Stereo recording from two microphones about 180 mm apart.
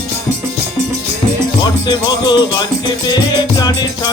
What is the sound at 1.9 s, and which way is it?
Music, 25° left (ahead or behind).